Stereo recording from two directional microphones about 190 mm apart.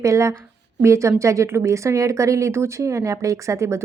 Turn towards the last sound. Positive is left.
turn(degrees=-15)  # may be behind; listen again after turning